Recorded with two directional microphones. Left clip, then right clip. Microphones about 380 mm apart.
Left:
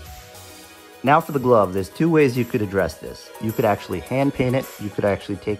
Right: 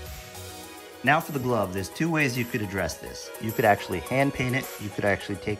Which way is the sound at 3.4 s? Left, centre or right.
Centre.